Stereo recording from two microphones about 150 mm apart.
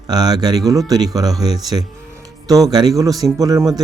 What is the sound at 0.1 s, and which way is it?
Speech, 25° right (ahead or behind).